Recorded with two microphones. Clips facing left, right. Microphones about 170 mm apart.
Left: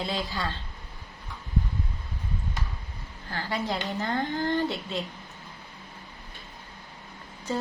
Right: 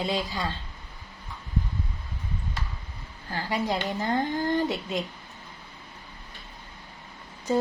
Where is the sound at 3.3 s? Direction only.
15° right (ahead or behind).